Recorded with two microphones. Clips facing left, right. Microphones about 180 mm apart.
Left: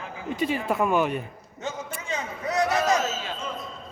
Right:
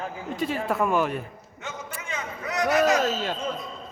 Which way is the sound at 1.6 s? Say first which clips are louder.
Left 4 dB; 30° left (ahead or behind).